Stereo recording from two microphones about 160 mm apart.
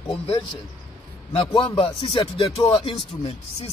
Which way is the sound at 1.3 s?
35° left (ahead or behind).